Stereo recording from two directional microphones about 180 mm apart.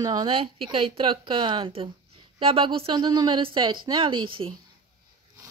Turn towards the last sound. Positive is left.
turn(degrees=-30)  # may be behind; listen again after turning